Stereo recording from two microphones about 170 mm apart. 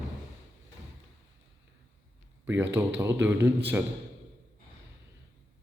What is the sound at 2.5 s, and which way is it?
Speech, 15° right (ahead or behind).